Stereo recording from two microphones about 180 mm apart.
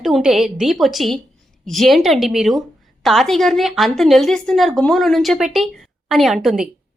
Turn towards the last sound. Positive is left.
turn(degrees=0)  # may be behind; listen again after turning